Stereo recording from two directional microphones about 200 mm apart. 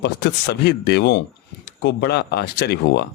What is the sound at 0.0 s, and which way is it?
Speech, 55° left (ahead or behind).